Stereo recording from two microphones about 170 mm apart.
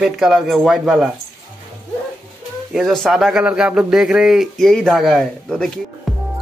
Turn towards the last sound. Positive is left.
turn(degrees=5)  # may be behind; listen again after turning